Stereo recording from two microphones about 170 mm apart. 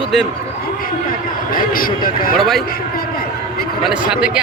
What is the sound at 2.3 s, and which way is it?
Speech, centre (ahead or behind).